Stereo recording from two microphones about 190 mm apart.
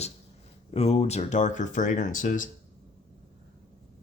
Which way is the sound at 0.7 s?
35° left (ahead or behind).